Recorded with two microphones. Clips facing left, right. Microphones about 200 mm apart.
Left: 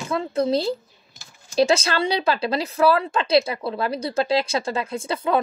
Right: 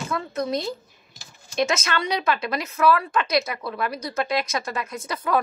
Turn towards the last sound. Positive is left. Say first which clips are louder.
# left 2 dB
turn(degrees=25)  # may be behind; listen again after turning